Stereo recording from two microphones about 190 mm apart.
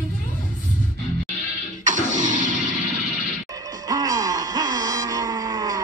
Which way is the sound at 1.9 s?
40° right (ahead or behind).